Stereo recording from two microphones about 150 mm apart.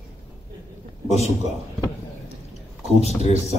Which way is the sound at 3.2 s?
50° left (ahead or behind).